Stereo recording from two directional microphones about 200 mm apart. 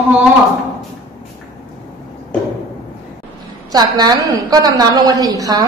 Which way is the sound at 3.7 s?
20° right (ahead or behind).